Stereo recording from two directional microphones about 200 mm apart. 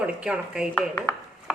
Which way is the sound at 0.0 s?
5° right (ahead or behind).